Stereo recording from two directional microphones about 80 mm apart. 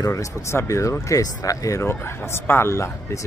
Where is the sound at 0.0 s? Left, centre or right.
Left.